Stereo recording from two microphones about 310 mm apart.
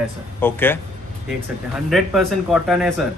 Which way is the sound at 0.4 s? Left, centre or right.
Centre.